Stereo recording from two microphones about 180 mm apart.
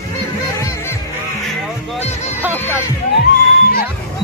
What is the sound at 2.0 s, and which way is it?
Music, 40° left (ahead or behind).